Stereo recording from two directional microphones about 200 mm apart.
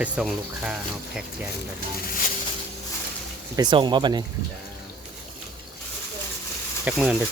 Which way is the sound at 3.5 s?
20° right (ahead or behind).